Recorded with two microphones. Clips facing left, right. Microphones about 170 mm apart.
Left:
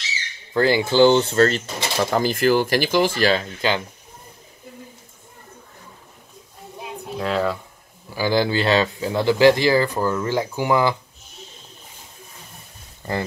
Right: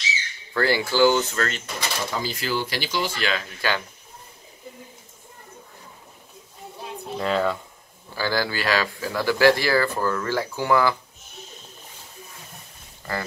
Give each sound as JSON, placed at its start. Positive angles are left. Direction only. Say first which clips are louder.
{"t": 0.5, "sound": "speech", "louder": "left 4 dB", "side_deg": 20}
{"t": 2.0, "sound": "speech", "louder": "left 12 dB", "side_deg": 55}
{"t": 3.6, "sound": "speech", "louder": "left 4 dB", "side_deg": 20}
{"t": 6.8, "sound": "a sound", "louder": "left 1 dB", "side_deg": 0}
{"t": 8.1, "sound": "speech", "louder": "left 5 dB", "side_deg": 15}